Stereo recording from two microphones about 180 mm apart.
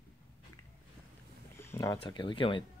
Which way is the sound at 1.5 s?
15° left (ahead or behind).